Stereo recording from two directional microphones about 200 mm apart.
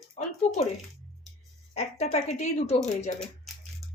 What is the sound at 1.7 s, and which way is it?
A woman's voice, 30° left (ahead or behind).